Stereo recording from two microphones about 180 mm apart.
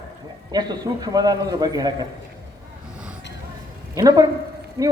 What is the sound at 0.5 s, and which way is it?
A man's voice, 20° right (ahead or behind).